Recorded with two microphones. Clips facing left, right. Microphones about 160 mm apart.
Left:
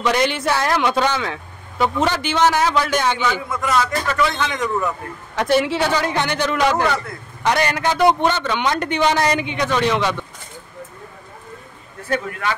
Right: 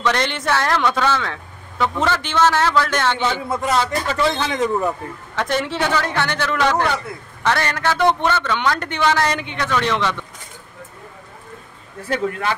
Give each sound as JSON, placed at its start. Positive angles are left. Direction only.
{"t": 0.0, "sound": "speech", "side_deg": 10}
{"t": 3.2, "sound": "a man's voice", "side_deg": -30}
{"t": 5.3, "sound": "speech", "side_deg": 10}